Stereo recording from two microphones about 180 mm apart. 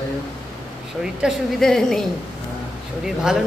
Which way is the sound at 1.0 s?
5° right (ahead or behind).